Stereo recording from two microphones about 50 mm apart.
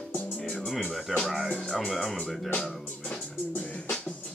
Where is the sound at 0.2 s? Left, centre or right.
Left.